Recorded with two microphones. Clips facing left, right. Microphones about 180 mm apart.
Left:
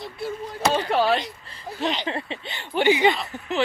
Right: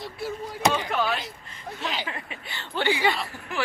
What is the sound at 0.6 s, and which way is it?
Speech, 15° right (ahead or behind).